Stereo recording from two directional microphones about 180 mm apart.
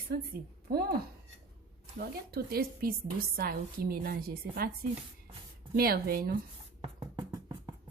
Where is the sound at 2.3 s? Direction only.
60° right (ahead or behind).